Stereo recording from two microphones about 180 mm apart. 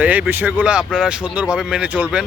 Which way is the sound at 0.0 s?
10° right (ahead or behind).